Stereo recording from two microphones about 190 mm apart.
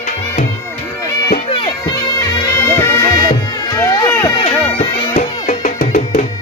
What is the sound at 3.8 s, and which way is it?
Run, 20° left (ahead or behind).